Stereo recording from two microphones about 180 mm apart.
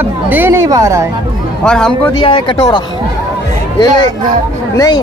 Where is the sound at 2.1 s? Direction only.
30° left (ahead or behind).